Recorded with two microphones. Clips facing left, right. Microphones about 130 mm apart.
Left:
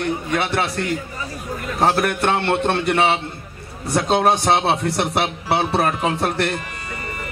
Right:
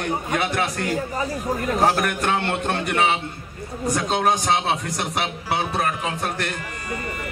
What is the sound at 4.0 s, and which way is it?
A man's voice, 30° left (ahead or behind).